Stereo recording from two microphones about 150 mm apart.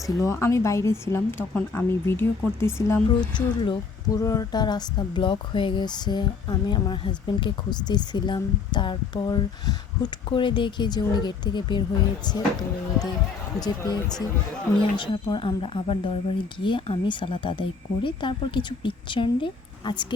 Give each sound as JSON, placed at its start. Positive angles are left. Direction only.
{"t": 0.2, "sound": "a woman's voice", "side_deg": 20}
{"t": 3.2, "sound": "speech", "side_deg": 30}
{"t": 13.6, "sound": "speech", "side_deg": 25}